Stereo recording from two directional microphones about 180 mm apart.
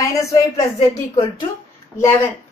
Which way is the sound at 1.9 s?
15° left (ahead or behind).